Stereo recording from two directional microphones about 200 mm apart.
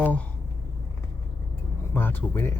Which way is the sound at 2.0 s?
10° left (ahead or behind).